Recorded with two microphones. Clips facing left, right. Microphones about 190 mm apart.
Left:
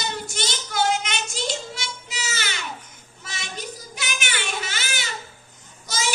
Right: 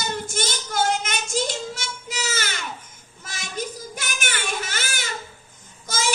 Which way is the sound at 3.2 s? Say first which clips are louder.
Right 4 dB; 45° right (ahead or behind).